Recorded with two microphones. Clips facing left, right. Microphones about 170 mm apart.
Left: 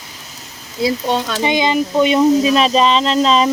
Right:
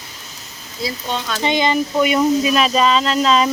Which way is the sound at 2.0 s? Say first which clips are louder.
Left 4 dB; 30° left (ahead or behind).